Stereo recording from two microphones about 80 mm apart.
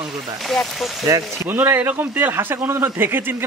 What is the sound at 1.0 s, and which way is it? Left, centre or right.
Speech, right.